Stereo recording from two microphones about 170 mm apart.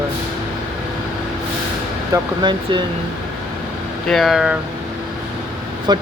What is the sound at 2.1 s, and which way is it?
Speech, 25° right (ahead or behind).